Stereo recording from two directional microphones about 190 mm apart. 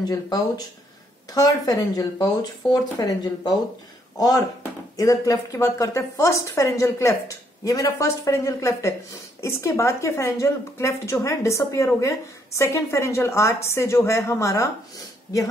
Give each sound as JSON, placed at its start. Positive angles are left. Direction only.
{"t": 0.0, "sound": "speech", "side_deg": 20}
{"t": 4.9, "sound": "a woman's voice", "side_deg": 20}